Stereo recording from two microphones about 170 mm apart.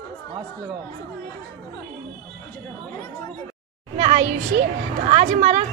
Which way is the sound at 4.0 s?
40° right (ahead or behind).